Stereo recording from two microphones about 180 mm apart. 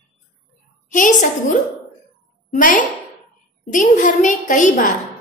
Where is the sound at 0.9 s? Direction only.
45° left (ahead or behind).